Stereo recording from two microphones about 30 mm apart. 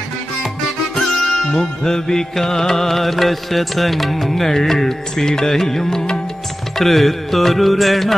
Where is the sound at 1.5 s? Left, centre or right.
Centre.